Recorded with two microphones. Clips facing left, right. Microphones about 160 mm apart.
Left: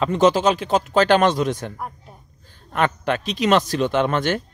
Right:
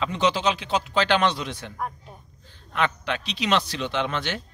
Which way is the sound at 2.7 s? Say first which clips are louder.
Left 5 dB; 45° left (ahead or behind).